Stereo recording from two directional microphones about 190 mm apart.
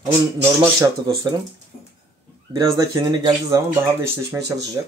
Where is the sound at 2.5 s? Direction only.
20° right (ahead or behind).